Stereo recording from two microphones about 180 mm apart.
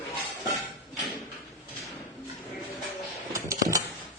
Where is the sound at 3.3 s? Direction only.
15° right (ahead or behind).